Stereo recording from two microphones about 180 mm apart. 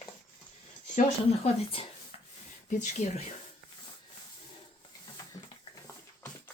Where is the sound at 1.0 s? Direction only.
35° left (ahead or behind).